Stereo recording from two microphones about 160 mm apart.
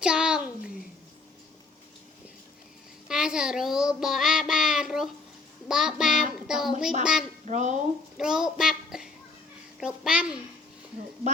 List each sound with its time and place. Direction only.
0.0 s a sound: 5° right (ahead or behind)
3.1 s child singing: 5° right (ahead or behind)
5.6 s a child's voice: 5° right (ahead or behind)
7.4 s speech: 45° right (ahead or behind)
8.2 s child singing: 5° right (ahead or behind)
9.8 s a child's voice: 5° right (ahead or behind)